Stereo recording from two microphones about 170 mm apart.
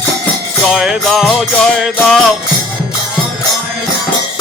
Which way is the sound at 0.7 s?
Centre (ahead or behind).